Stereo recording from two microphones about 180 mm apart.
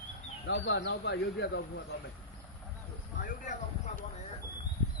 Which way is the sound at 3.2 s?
45° left (ahead or behind).